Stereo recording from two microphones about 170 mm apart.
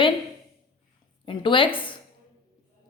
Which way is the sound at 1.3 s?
30° left (ahead or behind).